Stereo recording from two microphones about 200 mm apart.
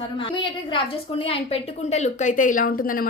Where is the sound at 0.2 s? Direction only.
25° left (ahead or behind).